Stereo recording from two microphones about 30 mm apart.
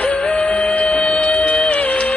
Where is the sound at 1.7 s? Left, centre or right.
Left.